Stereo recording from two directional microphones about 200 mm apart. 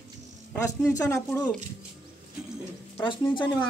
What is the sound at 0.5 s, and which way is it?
Speech, 15° left (ahead or behind).